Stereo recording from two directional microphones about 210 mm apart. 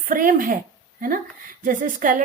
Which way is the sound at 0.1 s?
40° right (ahead or behind).